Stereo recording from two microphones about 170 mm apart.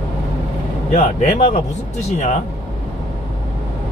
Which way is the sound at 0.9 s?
45° left (ahead or behind).